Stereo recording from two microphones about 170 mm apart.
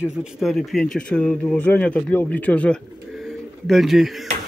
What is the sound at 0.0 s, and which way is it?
Speech, 5° right (ahead or behind).